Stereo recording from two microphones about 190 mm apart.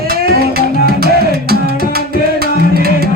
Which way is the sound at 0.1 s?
55° right (ahead or behind).